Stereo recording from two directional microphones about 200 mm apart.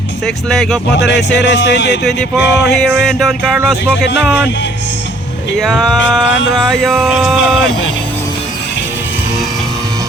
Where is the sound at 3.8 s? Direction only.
60° left (ahead or behind).